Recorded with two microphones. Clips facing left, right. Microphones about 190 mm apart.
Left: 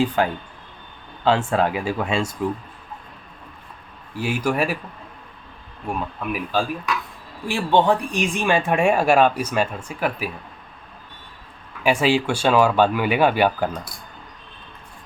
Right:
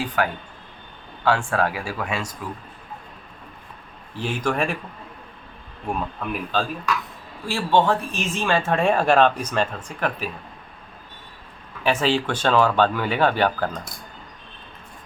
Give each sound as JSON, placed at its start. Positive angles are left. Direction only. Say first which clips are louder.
{"t": 0.2, "sound": "speech", "louder": "left 2 dB", "side_deg": 25}
{"t": 4.1, "sound": "speech", "louder": "left 2 dB", "side_deg": 10}
{"t": 5.9, "sound": "speech", "louder": "left 1 dB", "side_deg": 0}
{"t": 11.8, "sound": "speech", "louder": "left 2 dB", "side_deg": 10}